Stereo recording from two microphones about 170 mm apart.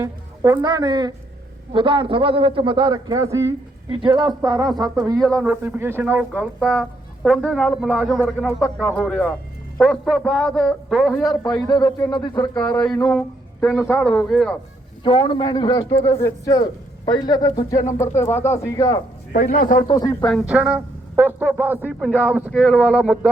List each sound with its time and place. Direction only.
0.0 s a woman's voice: 20° right (ahead or behind)
5.1 s a man's voice: 5° left (ahead or behind)
5.4 s a man's voice: 10° right (ahead or behind)
6.6 s a man's voice: 5° left (ahead or behind)
11.7 s a man's voice: 20° left (ahead or behind)
12.3 s a man's voice: 10° left (ahead or behind)
15.0 s a man's voice: 30° left (ahead or behind)
19.3 s a man's voice: 55° left (ahead or behind)
19.9 s a man's voice: 25° left (ahead or behind)
20.4 s a man's voice: 5° right (ahead or behind)